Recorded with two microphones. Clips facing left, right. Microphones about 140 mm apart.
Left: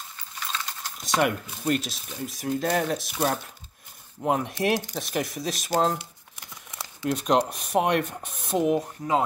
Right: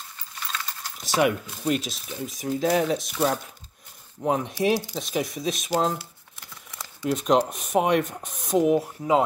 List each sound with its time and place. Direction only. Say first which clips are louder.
0.9 s speech: right 2 dB; centre (ahead or behind)
5.9 s crumpling: even; 15° left (ahead or behind)
7.1 s speech: right 2 dB; centre (ahead or behind)